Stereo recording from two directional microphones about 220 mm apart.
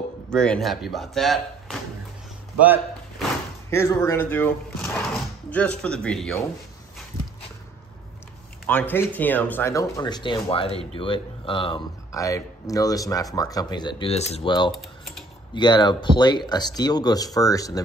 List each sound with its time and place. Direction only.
0.3 s speech: 5° left (ahead or behind)
2.6 s a sound: 5° right (ahead or behind)
3.7 s speech: 10° left (ahead or behind)
8.6 s speech: 10° left (ahead or behind)
14.7 s typing: centre (ahead or behind)
15.5 s speech: 20° left (ahead or behind)